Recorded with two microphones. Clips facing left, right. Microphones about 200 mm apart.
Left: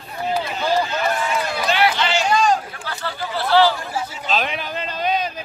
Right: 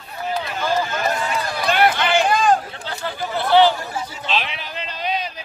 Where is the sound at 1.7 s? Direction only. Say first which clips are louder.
Right 3 dB; 50° right (ahead or behind).